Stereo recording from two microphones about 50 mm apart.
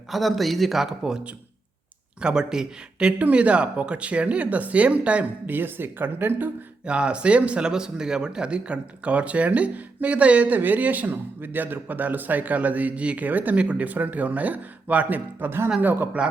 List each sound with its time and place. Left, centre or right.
0.1 s speech: centre
2.2 s speech: centre
5.5 s speech: right
6.8 s a man's voice: right
15.4 s speech: right
15.8 s a man's voice: right